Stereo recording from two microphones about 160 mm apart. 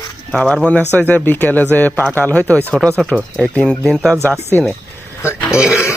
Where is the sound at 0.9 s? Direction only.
10° left (ahead or behind); by 5.8 s 5° right (ahead or behind).